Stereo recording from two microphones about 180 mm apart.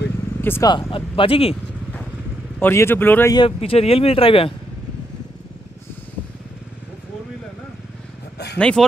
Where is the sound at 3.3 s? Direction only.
30° left (ahead or behind).